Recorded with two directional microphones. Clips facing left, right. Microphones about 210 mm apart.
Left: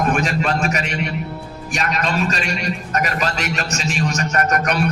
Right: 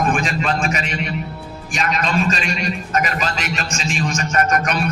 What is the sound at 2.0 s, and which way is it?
A man's voice, 50° left (ahead or behind).